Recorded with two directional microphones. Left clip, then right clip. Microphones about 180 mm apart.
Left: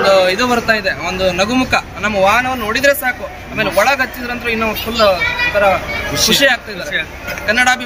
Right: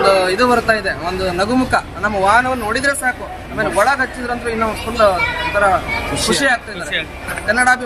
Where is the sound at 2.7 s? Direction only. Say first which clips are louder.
Left 8 dB; 35° left (ahead or behind).